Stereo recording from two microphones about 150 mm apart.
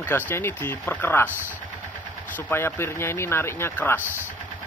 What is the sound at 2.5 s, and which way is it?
Speech, 15° left (ahead or behind).